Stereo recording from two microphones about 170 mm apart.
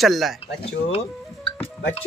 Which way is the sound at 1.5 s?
35° left (ahead or behind).